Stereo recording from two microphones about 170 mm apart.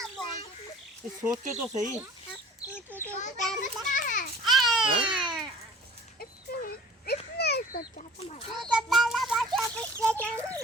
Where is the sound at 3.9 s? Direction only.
50° left (ahead or behind).